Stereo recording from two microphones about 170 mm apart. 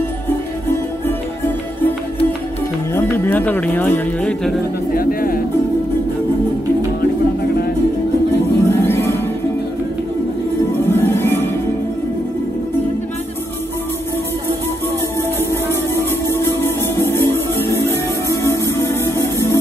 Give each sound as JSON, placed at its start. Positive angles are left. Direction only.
{"t": 0.7, "sound": "music", "side_deg": 15}
{"t": 2.9, "sound": "speech", "side_deg": 15}
{"t": 4.9, "sound": "music", "side_deg": 60}
{"t": 8.6, "sound": "music", "side_deg": 15}
{"t": 10.8, "sound": "music", "side_deg": 15}
{"t": 15.5, "sound": "music", "side_deg": 15}